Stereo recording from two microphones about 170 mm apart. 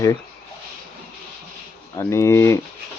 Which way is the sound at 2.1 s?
15° left (ahead or behind).